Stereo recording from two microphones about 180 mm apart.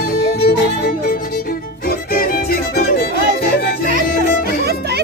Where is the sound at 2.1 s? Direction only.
50° left (ahead or behind).